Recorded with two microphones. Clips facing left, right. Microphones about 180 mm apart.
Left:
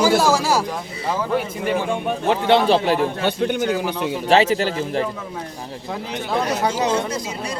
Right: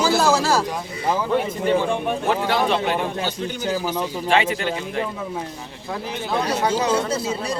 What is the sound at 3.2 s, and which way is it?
Speech, 60° left (ahead or behind).